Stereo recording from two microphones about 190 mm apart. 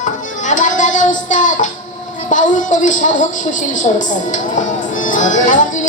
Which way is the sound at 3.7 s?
40° left (ahead or behind).